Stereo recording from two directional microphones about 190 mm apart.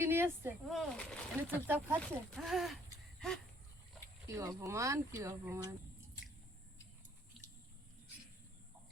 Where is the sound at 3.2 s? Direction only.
Centre (ahead or behind).